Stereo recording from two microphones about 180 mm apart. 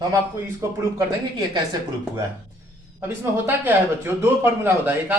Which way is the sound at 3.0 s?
10° right (ahead or behind).